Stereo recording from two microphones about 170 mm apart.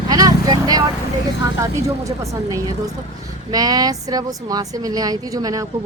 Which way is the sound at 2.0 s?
20° right (ahead or behind).